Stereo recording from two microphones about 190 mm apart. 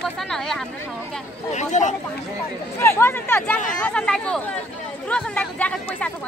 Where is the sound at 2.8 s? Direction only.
10° left (ahead or behind).